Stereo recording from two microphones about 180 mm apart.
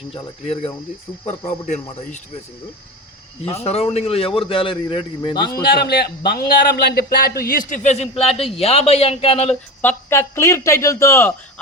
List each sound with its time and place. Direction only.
0.1 s speech: 35° left (ahead or behind)
3.4 s speech: 35° left (ahead or behind)
5.6 s a man's voice: 60° left (ahead or behind)
7.7 s speech: 40° left (ahead or behind)
9.5 s speech: 10° left (ahead or behind)